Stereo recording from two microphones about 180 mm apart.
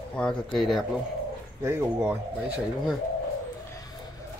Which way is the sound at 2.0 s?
5° right (ahead or behind).